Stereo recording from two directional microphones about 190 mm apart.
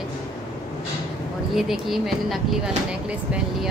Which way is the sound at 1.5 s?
Centre (ahead or behind).